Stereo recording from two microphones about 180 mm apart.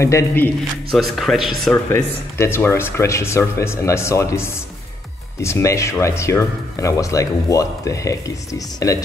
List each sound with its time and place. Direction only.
0.0 s speech: 15° left (ahead or behind)
1.1 s speech: centre (ahead or behind)
1.9 s speech: 15° left (ahead or behind)